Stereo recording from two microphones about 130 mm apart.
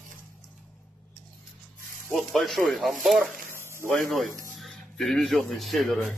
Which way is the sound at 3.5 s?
20° right (ahead or behind).